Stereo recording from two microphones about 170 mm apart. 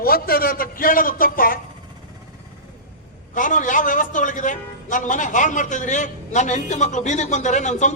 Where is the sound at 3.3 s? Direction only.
50° left (ahead or behind).